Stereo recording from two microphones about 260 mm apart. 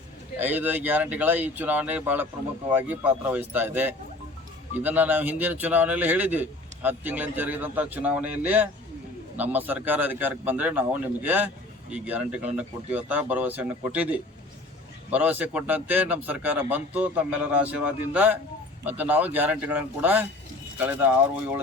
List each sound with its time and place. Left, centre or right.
0.3 s a man's voice: centre